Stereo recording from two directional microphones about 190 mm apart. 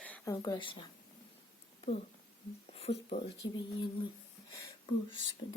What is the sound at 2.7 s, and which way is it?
Speech, 30° left (ahead or behind).